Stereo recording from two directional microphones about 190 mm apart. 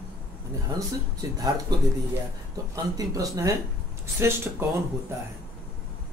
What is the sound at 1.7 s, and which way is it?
Speech, 20° right (ahead or behind).